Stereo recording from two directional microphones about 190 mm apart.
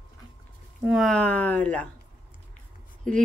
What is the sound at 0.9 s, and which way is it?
Speech, centre (ahead or behind).